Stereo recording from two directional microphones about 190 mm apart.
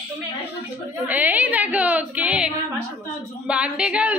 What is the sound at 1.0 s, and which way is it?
A woman's voice, 10° right (ahead or behind).